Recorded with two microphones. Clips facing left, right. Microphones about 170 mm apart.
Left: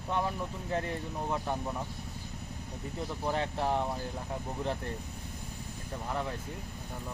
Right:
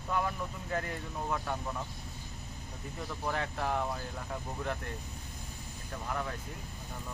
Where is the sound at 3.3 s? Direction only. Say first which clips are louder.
Left 3 dB; 25° left (ahead or behind).